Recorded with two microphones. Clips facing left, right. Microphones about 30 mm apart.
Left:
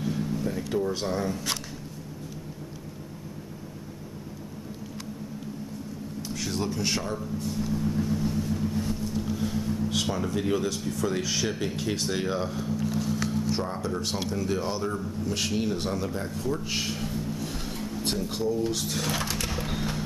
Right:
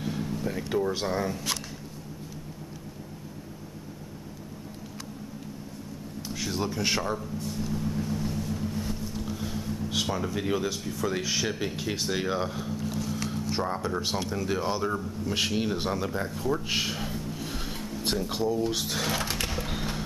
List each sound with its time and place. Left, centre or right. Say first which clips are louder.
0.0 s a sound: left 2 dB; centre
0.5 s speech: right 2 dB; centre
6.2 s a sound: even; centre
7.2 s speech: left 2 dB; centre
17.4 s music: left 1 dB; centre
17.8 s speech: even; centre
19.2 s sewing machine: even; centre
19.5 s music: left 1 dB; centre